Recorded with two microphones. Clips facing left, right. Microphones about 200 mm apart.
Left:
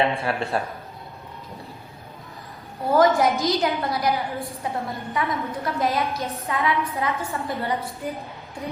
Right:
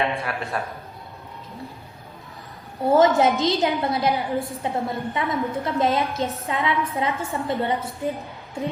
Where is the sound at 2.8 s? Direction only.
30° right (ahead or behind).